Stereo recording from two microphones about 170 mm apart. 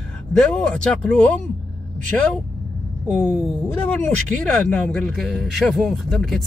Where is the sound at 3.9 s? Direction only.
10° left (ahead or behind).